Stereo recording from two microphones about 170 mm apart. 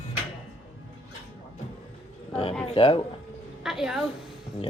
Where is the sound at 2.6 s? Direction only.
30° left (ahead or behind).